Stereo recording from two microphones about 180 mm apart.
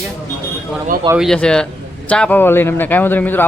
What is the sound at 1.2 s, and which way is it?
Speech, 5° left (ahead or behind).